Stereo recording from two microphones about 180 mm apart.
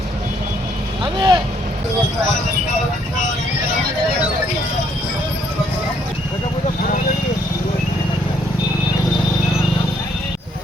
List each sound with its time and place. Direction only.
1.0 s speech: 25° right (ahead or behind)